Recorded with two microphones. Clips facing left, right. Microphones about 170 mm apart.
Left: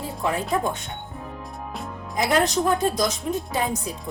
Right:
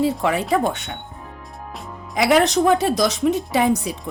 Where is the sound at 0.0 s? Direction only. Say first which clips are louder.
Right 7 dB; 80° right.